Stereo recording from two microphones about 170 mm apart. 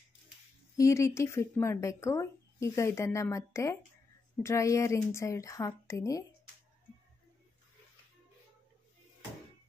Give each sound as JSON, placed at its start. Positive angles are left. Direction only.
{"t": 0.7, "sound": "speech", "side_deg": 20}